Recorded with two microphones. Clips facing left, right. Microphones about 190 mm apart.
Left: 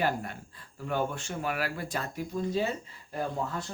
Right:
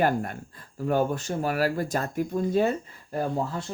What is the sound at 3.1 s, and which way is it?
Speech, 40° right (ahead or behind).